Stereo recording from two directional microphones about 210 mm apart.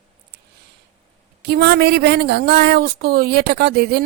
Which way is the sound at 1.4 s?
50° right (ahead or behind).